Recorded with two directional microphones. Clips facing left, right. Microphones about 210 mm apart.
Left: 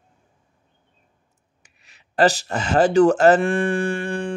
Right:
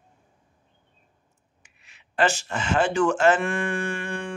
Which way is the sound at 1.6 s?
40° left (ahead or behind).